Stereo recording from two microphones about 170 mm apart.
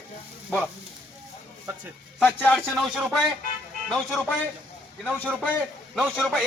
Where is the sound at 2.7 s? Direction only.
5° right (ahead or behind).